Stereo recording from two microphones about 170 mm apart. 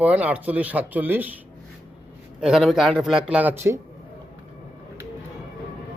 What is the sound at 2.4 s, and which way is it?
A man's voice, 5° right (ahead or behind).